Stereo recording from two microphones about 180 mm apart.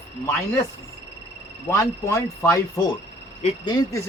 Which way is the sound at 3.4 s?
35° left (ahead or behind).